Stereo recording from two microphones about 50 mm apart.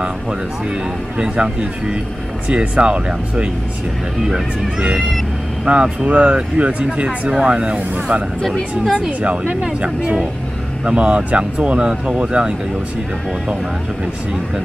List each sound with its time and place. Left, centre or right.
1.1 s speech: right
5.7 s speech: right
9.6 s speech: centre